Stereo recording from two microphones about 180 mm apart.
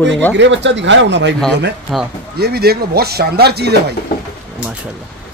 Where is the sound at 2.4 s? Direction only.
60° right (ahead or behind).